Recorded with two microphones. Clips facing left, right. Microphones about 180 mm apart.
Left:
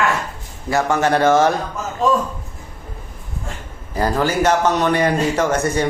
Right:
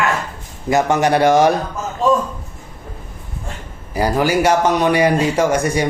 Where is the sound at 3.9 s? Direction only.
10° right (ahead or behind).